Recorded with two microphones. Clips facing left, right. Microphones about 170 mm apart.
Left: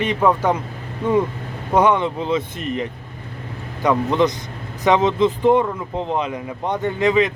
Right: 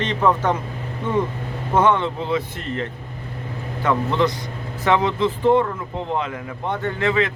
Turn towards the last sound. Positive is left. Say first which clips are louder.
# left 3 dB
turn(degrees=15)  # may be behind; listen again after turning